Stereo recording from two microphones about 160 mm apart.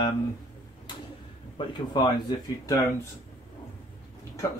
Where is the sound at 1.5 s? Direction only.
25° left (ahead or behind).